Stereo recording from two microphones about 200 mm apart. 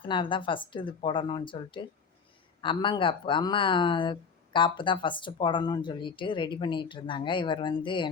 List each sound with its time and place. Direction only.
0.1 s speech: 25° left (ahead or behind)